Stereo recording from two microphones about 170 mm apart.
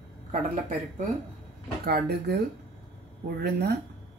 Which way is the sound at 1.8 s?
75° right (ahead or behind).